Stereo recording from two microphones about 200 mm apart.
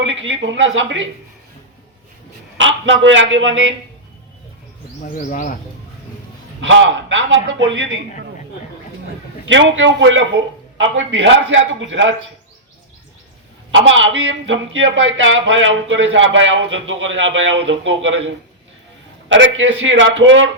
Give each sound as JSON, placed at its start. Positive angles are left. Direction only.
{"t": 0.0, "sound": "speech", "side_deg": -70}
{"t": 2.6, "sound": "speech", "side_deg": -70}
{"t": 5.1, "sound": "speech", "side_deg": 40}
{"t": 6.6, "sound": "speech", "side_deg": -70}
{"t": 9.5, "sound": "speech", "side_deg": -70}
{"t": 13.7, "sound": "speech", "side_deg": -75}
{"t": 19.3, "sound": "speech", "side_deg": -70}